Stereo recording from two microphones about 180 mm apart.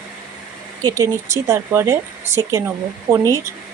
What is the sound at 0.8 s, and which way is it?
A woman's voice, 15° right (ahead or behind).